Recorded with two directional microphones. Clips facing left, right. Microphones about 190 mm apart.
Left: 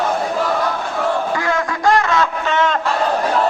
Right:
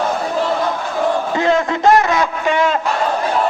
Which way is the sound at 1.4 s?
25° right (ahead or behind).